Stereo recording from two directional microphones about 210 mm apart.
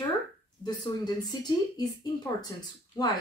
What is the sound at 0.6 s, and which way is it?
Speech, 20° left (ahead or behind).